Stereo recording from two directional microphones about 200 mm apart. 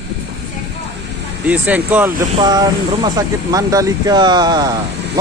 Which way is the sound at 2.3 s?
20° right (ahead or behind).